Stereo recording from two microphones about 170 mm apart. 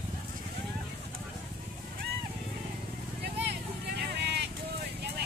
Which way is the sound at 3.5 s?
80° right.